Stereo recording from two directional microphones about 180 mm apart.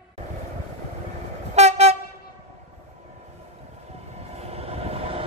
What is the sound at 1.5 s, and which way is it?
Train, 35° right (ahead or behind).